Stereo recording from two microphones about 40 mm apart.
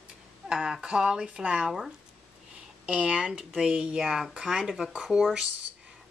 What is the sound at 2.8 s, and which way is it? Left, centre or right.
Speech, right.